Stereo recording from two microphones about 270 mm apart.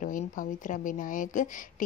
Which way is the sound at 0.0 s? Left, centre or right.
Left.